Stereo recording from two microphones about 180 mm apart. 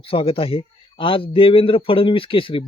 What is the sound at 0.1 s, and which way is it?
Speech, 30° left (ahead or behind).